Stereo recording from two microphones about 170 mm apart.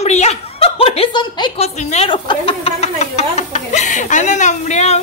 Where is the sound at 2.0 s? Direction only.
30° left (ahead or behind).